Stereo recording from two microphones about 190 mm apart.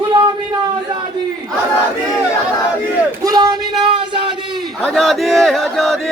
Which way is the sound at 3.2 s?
20° right (ahead or behind).